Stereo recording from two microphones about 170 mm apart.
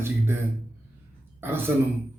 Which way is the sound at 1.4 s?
10° right (ahead or behind).